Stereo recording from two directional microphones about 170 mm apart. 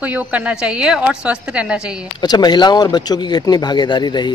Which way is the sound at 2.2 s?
25° left (ahead or behind).